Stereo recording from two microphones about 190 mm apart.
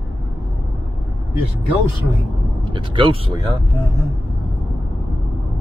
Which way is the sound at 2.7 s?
25° right (ahead or behind).